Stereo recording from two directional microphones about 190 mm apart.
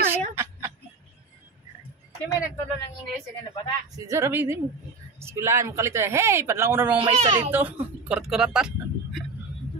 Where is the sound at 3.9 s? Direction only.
15° right (ahead or behind).